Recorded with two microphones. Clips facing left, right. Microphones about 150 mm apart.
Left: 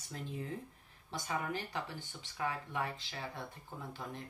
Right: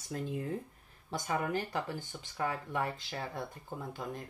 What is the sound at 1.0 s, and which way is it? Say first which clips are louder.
Speech: right 4 dB; 45° right (ahead or behind).